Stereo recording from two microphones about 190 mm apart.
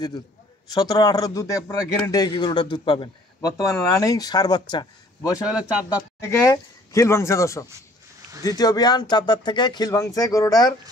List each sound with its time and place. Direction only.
0.7 s a man's voice: 20° left (ahead or behind)
5.5 s speech: 5° right (ahead or behind)
6.2 s a man's voice: 15° left (ahead or behind)